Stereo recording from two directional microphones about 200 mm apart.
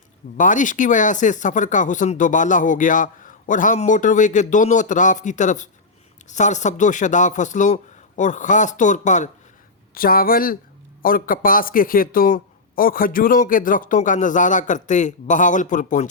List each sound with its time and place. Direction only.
0.3 s speech: 40° left (ahead or behind)